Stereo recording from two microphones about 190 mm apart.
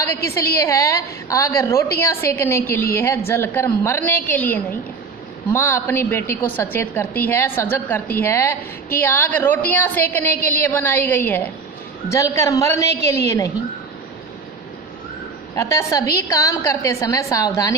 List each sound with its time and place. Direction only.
0.6 s a woman's voice: 15° left (ahead or behind)
15.5 s a woman's voice: 15° left (ahead or behind)